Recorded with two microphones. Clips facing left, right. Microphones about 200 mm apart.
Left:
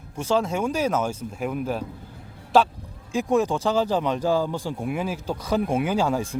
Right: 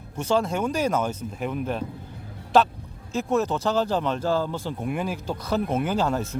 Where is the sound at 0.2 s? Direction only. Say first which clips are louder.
Even; 5° left (ahead or behind).